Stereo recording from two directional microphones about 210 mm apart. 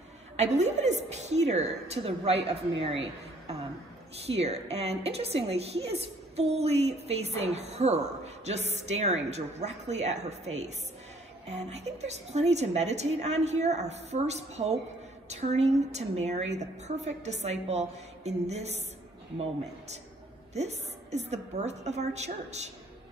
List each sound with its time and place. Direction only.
0.4 s a woman's voice: 35° right (ahead or behind)
20.5 s a woman's voice: 30° right (ahead or behind)